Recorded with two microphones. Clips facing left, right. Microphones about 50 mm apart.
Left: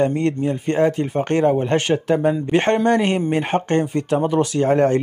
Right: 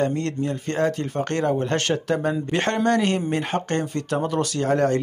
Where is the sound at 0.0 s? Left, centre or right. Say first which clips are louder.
Left 5 dB; centre.